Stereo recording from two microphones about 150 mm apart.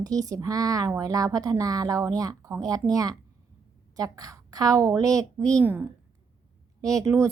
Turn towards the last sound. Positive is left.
turn(degrees=-20)  # may be behind; listen again after turning